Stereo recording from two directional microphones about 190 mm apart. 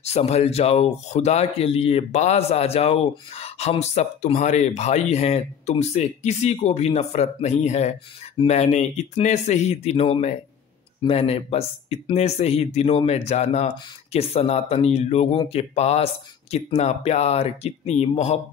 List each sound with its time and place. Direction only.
0.0 s speech: 35° left (ahead or behind)